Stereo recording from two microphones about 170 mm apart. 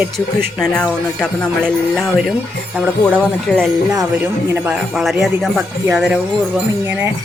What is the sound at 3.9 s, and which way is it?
Speech, 15° right (ahead or behind).